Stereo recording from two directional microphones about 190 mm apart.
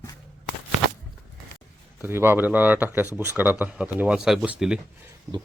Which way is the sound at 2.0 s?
10° right (ahead or behind).